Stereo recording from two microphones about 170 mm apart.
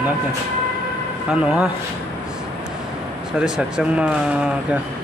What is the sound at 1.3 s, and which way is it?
Speech, 5° right (ahead or behind).